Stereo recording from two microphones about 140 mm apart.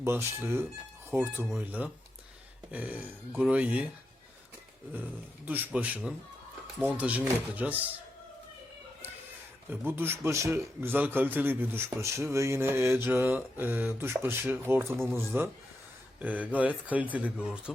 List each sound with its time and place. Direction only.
0.0 s a man's voice: 15° right (ahead or behind)
5.5 s a man's voice: 10° right (ahead or behind)
9.6 s a man's voice: 15° right (ahead or behind)